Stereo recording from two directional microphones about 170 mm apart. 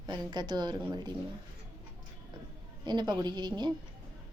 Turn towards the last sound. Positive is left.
turn(degrees=-25)  # may be behind; listen again after turning